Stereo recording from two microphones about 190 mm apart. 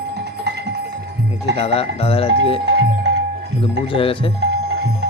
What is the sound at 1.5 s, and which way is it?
Speech, 30° left (ahead or behind).